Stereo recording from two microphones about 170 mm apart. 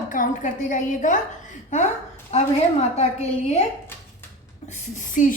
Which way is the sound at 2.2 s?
40° left (ahead or behind).